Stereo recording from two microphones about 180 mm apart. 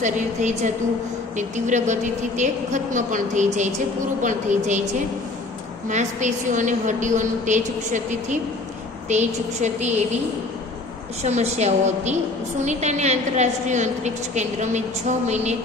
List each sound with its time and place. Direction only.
0.0 s a woman's voice: 40° right (ahead or behind)
5.9 s a woman's voice: 40° right (ahead or behind)
11.2 s a woman's voice: 40° right (ahead or behind)